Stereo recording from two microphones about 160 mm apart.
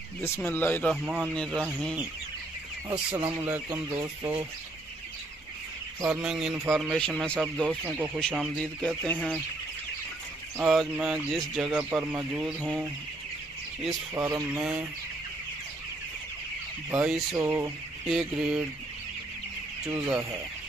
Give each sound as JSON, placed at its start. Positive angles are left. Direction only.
{"t": 0.5, "sound": "speech", "side_deg": 10}
{"t": 1.0, "sound": "speech", "side_deg": 0}
{"t": 3.4, "sound": "speech", "side_deg": -15}
{"t": 6.0, "sound": "speech", "side_deg": -5}
{"t": 8.5, "sound": "speech", "side_deg": 10}
{"t": 10.6, "sound": "speech", "side_deg": -5}
{"t": 14.1, "sound": "speech", "side_deg": -15}
{"t": 16.9, "sound": "speech", "side_deg": -5}
{"t": 19.9, "sound": "speech", "side_deg": -15}